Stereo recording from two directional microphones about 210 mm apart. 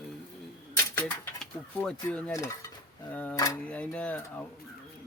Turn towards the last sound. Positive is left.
turn(degrees=5)  # may be behind; listen again after turning